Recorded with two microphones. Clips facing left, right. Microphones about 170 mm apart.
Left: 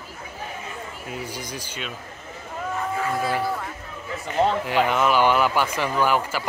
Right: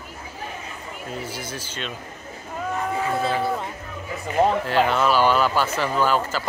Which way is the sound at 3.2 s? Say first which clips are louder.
Right 2 dB; 25° right (ahead or behind).